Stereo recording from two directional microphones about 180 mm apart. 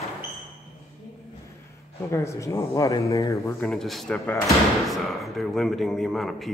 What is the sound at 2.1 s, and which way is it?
Speech, 15° left (ahead or behind).